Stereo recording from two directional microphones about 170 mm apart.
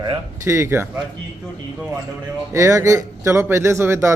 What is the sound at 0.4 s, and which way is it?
Speech, 15° right (ahead or behind).